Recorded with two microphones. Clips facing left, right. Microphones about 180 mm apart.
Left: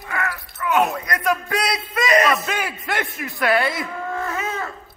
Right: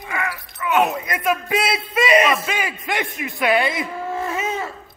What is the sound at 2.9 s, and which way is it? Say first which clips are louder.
Speech: right 1 dB; centre (ahead or behind).